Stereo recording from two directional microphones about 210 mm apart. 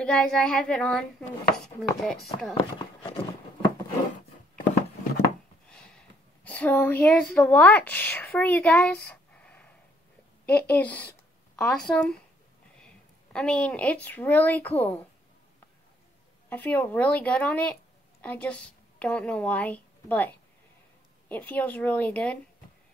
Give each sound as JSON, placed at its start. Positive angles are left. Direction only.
{"t": 0.0, "sound": "speech", "side_deg": 5}
{"t": 2.5, "sound": "speech", "side_deg": 25}
{"t": 5.7, "sound": "a woman's voice", "side_deg": 5}
{"t": 16.4, "sound": "a woman's voice", "side_deg": 10}